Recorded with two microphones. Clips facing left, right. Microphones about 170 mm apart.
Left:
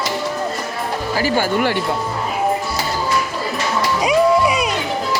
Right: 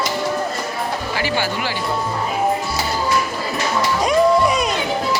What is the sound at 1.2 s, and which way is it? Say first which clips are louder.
Speech: left 6 dB; 45° left (ahead or behind).